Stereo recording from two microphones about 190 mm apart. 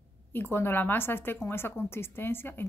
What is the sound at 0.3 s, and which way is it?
A woman's voice, 10° left (ahead or behind).